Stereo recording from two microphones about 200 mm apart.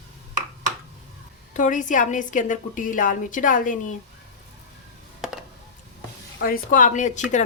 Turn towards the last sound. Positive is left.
turn(degrees=35)  # may be behind; listen again after turning